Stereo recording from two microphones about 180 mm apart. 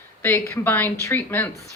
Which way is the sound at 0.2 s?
15° left (ahead or behind).